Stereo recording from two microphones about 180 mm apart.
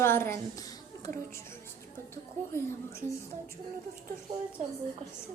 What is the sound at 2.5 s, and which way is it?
Speech, 15° left (ahead or behind).